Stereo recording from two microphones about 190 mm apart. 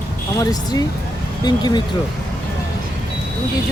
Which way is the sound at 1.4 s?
20° left (ahead or behind).